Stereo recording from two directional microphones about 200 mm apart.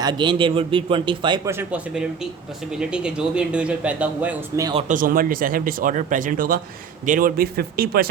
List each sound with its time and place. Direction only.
0.0 s a man's voice: 20° right (ahead or behind)
1.5 s speech: 10° right (ahead or behind)
4.9 s speech: 45° right (ahead or behind)